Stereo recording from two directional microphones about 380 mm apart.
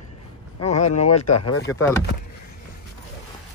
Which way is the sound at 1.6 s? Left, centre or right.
Centre.